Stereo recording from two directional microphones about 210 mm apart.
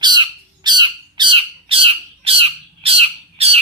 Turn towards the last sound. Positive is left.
turn(degrees=-30)  # may be behind; listen again after turning